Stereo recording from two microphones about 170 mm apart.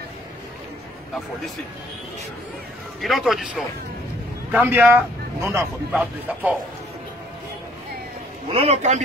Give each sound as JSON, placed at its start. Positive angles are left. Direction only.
{"t": 3.0, "sound": "speech", "side_deg": 0}
{"t": 4.5, "sound": "speech", "side_deg": -10}
{"t": 8.5, "sound": "a man's voice", "side_deg": -35}